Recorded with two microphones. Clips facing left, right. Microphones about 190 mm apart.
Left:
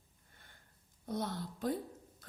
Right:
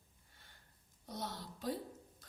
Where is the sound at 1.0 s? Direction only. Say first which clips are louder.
Left 7 dB; 55° left (ahead or behind).